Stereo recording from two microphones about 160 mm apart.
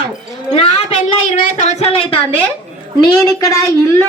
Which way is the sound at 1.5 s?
45° left (ahead or behind).